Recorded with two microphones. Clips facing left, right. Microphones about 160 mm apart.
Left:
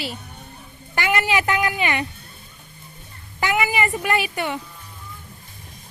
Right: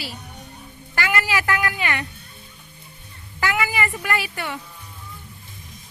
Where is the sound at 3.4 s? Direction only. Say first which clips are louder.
Left 2 dB; 20° left (ahead or behind).